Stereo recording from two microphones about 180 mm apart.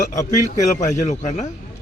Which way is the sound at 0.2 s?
20° left (ahead or behind).